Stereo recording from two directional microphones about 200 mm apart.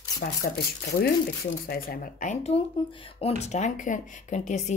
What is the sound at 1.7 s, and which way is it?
Speech, 45° left (ahead or behind).